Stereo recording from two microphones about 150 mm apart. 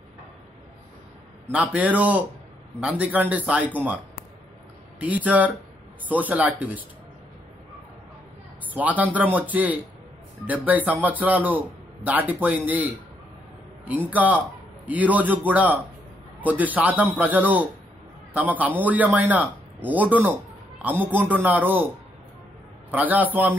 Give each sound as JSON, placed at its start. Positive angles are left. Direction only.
{"t": 1.5, "sound": "speech", "side_deg": -10}
{"t": 5.0, "sound": "speech", "side_deg": -10}
{"t": 8.7, "sound": "speech", "side_deg": -10}
{"t": 14.1, "sound": "speech", "side_deg": -10}